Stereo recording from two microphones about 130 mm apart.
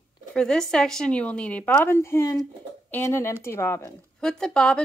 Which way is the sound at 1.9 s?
20° left (ahead or behind).